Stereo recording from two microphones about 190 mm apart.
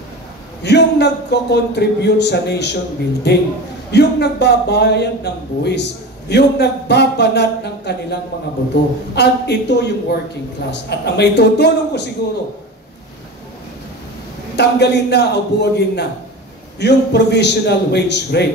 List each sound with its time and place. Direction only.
0.6 s a man's voice: 60° left (ahead or behind)
14.5 s a man's voice: 60° left (ahead or behind)